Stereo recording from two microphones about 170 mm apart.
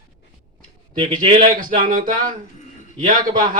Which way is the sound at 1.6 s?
55° right (ahead or behind).